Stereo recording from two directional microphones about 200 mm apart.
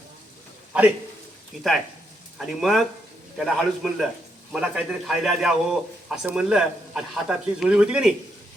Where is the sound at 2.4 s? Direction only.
Centre (ahead or behind).